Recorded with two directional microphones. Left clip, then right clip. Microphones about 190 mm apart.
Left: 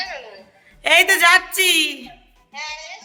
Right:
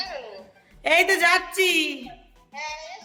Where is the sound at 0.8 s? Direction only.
5° right (ahead or behind).